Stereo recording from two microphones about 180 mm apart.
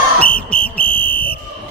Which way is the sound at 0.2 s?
5° left (ahead or behind).